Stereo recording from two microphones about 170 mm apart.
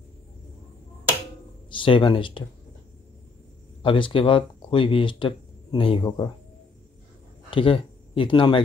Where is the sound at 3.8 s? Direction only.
30° left (ahead or behind).